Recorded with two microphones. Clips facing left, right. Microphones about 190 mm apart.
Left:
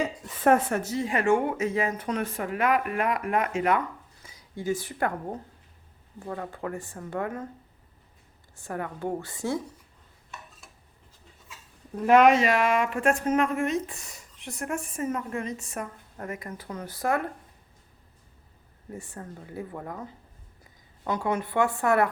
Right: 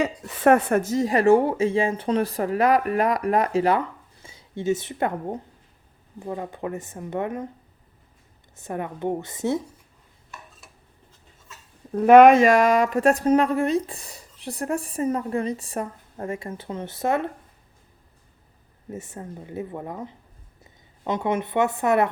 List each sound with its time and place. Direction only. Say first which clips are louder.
0.0 s speech: right 4 dB; 75° right (ahead or behind); by 7.4 s 20° right (ahead or behind)
8.5 s speech: right 3 dB; 20° right (ahead or behind)
11.9 s speech: right 7 dB; 60° right (ahead or behind); by 17.2 s 25° right (ahead or behind)
18.9 s speech: right 4 dB; 20° right (ahead or behind)